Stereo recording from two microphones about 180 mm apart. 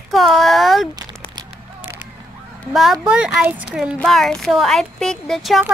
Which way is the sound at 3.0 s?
5° right (ahead or behind).